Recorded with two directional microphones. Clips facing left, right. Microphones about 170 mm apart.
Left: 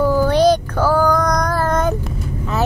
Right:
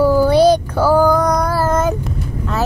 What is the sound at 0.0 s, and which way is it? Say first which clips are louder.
Music: right 3 dB; 10° right (ahead or behind).